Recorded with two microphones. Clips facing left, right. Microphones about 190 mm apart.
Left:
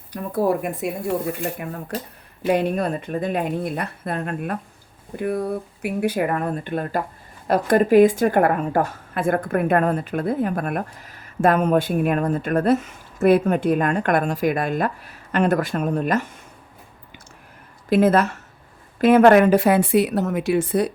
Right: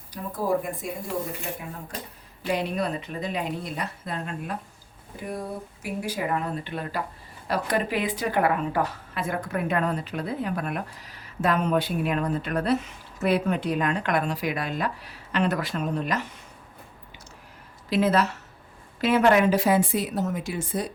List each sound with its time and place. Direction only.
0.1 s speech: 65° left (ahead or behind)
2.5 s a woman's voice: 50° left (ahead or behind)
17.8 s a woman's voice: 50° left (ahead or behind)